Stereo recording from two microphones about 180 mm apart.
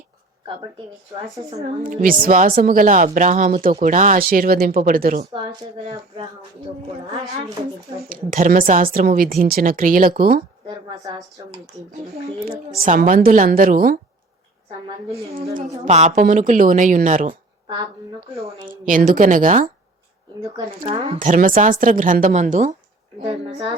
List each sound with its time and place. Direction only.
1.5 s a woman's voice: 35° right (ahead or behind)
1.8 s speech: 50° right (ahead or behind)
8.1 s speech: 50° right (ahead or behind)
12.8 s speech: 50° right (ahead or behind)
15.1 s a woman's voice: 35° right (ahead or behind)
18.3 s a woman's voice: 35° right (ahead or behind)
18.7 s speech: 50° right (ahead or behind)
23.3 s a woman's voice: 30° right (ahead or behind)